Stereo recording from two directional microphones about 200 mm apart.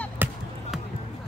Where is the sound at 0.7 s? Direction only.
Centre (ahead or behind).